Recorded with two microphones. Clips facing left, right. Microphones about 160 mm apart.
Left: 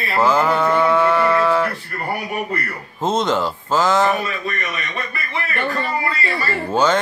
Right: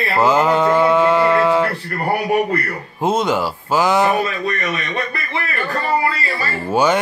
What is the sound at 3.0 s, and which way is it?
Speech, 10° right (ahead or behind).